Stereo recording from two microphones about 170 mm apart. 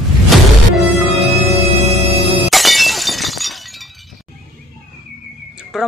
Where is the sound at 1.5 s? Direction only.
40° right (ahead or behind).